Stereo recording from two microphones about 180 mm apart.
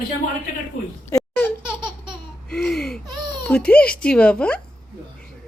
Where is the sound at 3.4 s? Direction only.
5° left (ahead or behind).